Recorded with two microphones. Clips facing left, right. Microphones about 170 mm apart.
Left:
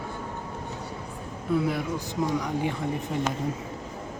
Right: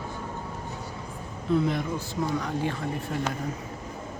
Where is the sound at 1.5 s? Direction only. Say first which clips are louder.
Right 1 dB; 5° left (ahead or behind).